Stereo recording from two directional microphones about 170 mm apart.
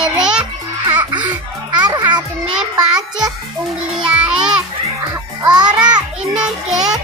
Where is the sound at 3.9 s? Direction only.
5° right (ahead or behind).